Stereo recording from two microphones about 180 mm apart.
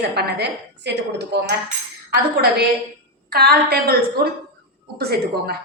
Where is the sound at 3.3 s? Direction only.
60° right (ahead or behind).